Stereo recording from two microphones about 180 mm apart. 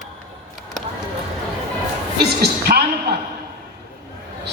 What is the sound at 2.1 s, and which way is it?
A woman's voice, 60° right (ahead or behind).